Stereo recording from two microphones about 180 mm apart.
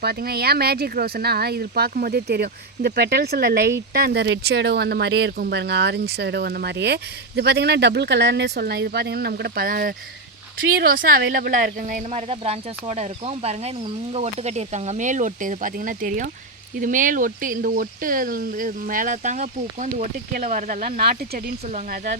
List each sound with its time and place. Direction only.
0.0 s speech: 60° right (ahead or behind)